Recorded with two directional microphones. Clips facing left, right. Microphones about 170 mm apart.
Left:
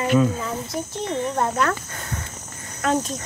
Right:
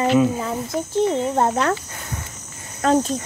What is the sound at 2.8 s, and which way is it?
Speech, 35° right (ahead or behind).